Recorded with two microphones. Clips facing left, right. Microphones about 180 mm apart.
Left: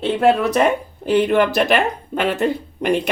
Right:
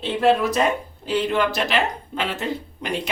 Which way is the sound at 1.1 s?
55° left (ahead or behind).